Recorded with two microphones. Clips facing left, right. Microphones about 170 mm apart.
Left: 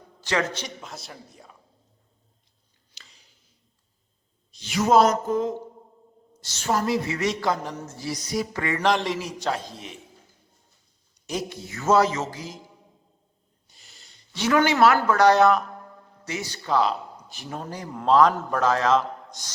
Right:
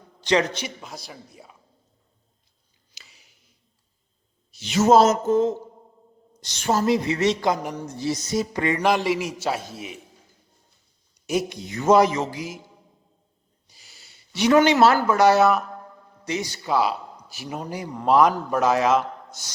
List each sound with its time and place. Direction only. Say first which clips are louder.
0.3 s a woman's voice: right 5 dB; 20° right (ahead or behind)
0.8 s speech: right 1 dB; centre (ahead or behind)
3.0 s a sound: even; 10° right (ahead or behind)
4.6 s a woman's voice: right 3 dB; 25° right (ahead or behind)
8.8 s speech: right 1 dB; 5° right (ahead or behind)
11.3 s speech: right 5 dB; 15° right (ahead or behind)
13.7 s a sound: even; centre (ahead or behind); by 14.9 s 25° right (ahead or behind)
15.0 s speech: even; 10° right (ahead or behind)